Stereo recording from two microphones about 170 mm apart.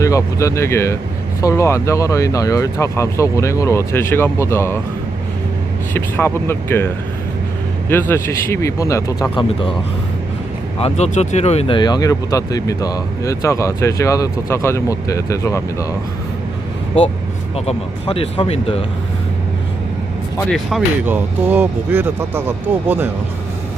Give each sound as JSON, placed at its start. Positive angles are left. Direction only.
{"t": 0.0, "sound": "speech", "side_deg": 20}
{"t": 5.9, "sound": "speech", "side_deg": 15}
{"t": 9.3, "sound": "speech", "side_deg": 30}
{"t": 10.8, "sound": "speech", "side_deg": 40}
{"t": 11.8, "sound": "speech", "side_deg": 25}
{"t": 17.7, "sound": "speech", "side_deg": 35}
{"t": 20.5, "sound": "speech", "side_deg": 0}
{"t": 21.1, "sound": "speech", "side_deg": -10}